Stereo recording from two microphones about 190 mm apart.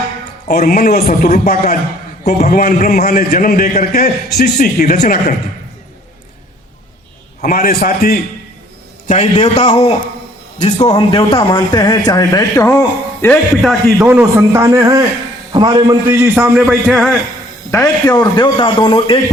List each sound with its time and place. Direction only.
0.4 s a man's voice: 40° left (ahead or behind)
7.4 s a man's voice: 50° left (ahead or behind)
9.0 s a man's voice: 35° left (ahead or behind); by 12.7 s 15° left (ahead or behind)
13.2 s a man's voice: 5° left (ahead or behind)
14.1 s a man's voice: 10° right (ahead or behind)
17.7 s a man's voice: 15° left (ahead or behind)